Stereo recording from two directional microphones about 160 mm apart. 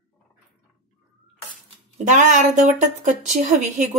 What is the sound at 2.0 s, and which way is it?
A woman's voice, 50° right (ahead or behind).